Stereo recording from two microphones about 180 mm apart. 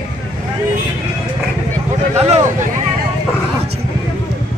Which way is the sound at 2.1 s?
35° right (ahead or behind).